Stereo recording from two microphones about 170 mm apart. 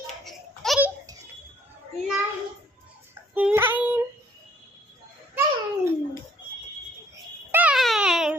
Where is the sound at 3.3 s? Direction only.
10° right (ahead or behind).